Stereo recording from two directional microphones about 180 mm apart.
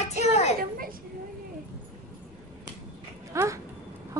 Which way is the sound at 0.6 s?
55° right (ahead or behind).